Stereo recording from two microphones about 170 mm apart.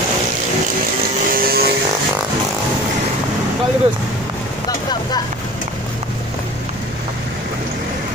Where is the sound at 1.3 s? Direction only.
60° right (ahead or behind).